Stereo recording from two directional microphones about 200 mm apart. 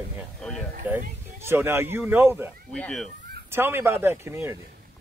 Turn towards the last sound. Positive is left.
turn(degrees=-10)  # may be behind; listen again after turning